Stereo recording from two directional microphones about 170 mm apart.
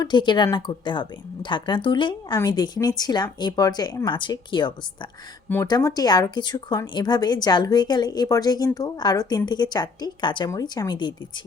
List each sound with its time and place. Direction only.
0.0 s speech: 25° left (ahead or behind)